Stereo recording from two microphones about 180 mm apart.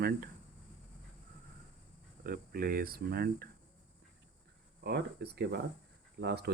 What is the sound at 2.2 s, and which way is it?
Speech, 55° right (ahead or behind).